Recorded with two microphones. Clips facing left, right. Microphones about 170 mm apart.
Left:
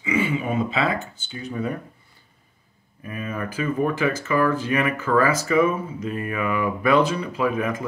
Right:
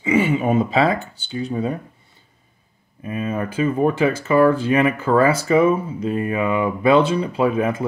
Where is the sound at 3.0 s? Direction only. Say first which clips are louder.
Right 6 dB; 25° right (ahead or behind).